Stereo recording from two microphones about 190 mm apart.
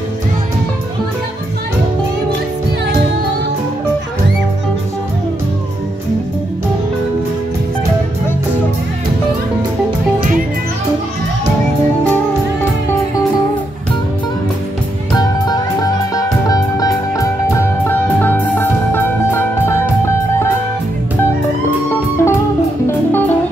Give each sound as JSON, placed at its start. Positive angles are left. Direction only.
{"t": 15.1, "sound": "music", "side_deg": 20}
{"t": 21.8, "sound": "music", "side_deg": 15}